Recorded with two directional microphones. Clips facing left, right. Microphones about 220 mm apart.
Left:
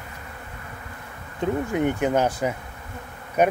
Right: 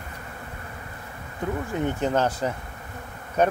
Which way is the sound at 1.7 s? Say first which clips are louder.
Left 1 dB; 15° left (ahead or behind).